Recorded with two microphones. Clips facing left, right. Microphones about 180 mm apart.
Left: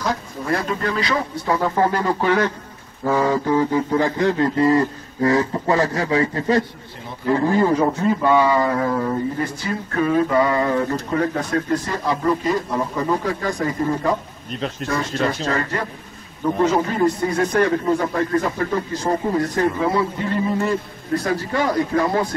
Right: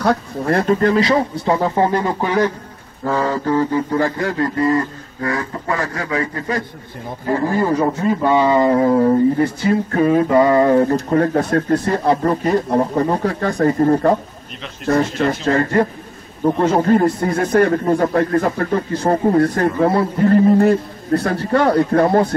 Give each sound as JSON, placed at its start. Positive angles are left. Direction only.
{"t": 0.0, "sound": "speech", "side_deg": -60}
{"t": 0.9, "sound": "speech", "side_deg": -30}
{"t": 3.1, "sound": "a sound", "side_deg": 10}
{"t": 7.5, "sound": "speech", "side_deg": -5}
{"t": 8.3, "sound": "speech", "side_deg": -25}
{"t": 13.2, "sound": "speech", "side_deg": -60}